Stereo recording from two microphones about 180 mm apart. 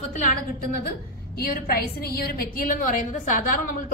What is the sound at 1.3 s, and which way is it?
A woman's voice, 55° left (ahead or behind).